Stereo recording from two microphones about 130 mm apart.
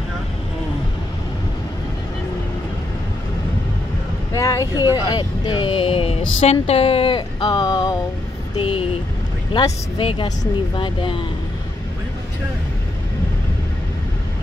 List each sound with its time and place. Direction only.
4.3 s vehicle: 25° left (ahead or behind)
4.9 s speech: 35° left (ahead or behind)
8.5 s speech: 45° left (ahead or behind)